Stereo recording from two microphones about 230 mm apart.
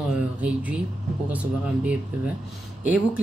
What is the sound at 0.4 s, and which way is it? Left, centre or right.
Speech, centre.